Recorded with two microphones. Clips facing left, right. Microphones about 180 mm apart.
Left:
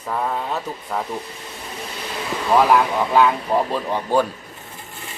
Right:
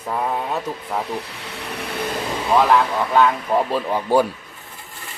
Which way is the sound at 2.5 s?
5° left (ahead or behind).